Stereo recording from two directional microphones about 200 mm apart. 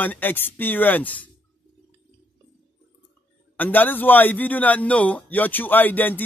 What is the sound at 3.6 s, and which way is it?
Speech, 10° left (ahead or behind).